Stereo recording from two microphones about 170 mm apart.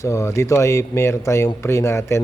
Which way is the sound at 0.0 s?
15° left (ahead or behind).